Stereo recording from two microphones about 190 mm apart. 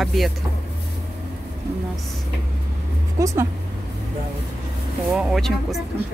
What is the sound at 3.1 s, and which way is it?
Speech, 15° right (ahead or behind).